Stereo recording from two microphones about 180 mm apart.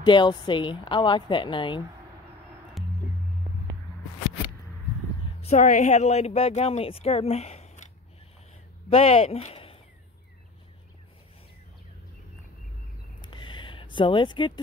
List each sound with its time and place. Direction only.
0.0 s speech: 25° left (ahead or behind)
2.8 s music: centre (ahead or behind)
5.4 s speech: 40° left (ahead or behind)
8.9 s speech: 35° left (ahead or behind)
13.2 s a sound: 25° left (ahead or behind)